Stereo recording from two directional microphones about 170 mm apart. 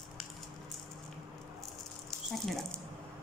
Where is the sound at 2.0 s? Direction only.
Centre (ahead or behind).